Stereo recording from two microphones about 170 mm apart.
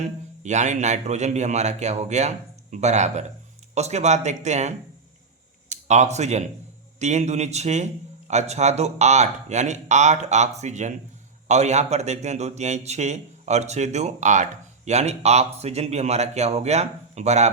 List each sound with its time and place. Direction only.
0.4 s speech: 45° right (ahead or behind)